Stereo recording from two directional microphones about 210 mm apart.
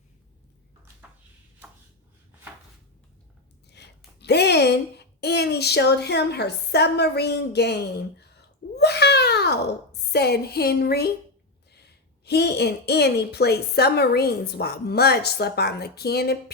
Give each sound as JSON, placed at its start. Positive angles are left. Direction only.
{"t": 3.7, "sound": "a woman's voice", "side_deg": 55}
{"t": 8.7, "sound": "a sound", "side_deg": 50}
{"t": 10.1, "sound": "a woman's voice", "side_deg": 50}
{"t": 12.2, "sound": "a woman's voice", "side_deg": 50}